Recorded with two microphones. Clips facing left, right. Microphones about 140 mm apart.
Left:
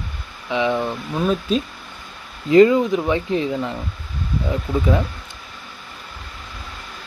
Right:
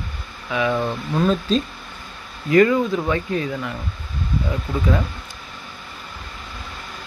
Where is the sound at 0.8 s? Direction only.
5° left (ahead or behind).